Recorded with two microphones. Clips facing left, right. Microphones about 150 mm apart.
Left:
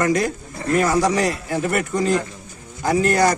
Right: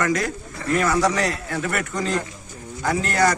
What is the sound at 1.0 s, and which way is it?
Speech, 15° left (ahead or behind).